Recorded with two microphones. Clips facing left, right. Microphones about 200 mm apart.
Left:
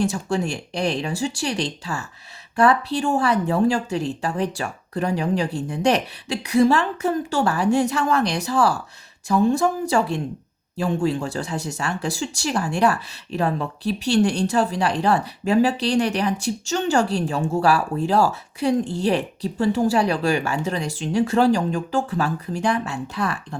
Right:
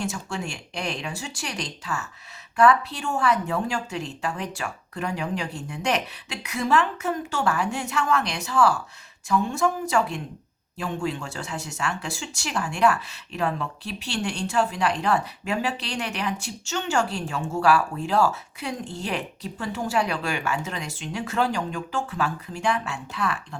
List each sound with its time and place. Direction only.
0.0 s speech: 35° left (ahead or behind)